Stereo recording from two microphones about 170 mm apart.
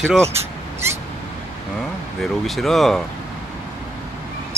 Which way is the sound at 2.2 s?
Centre (ahead or behind).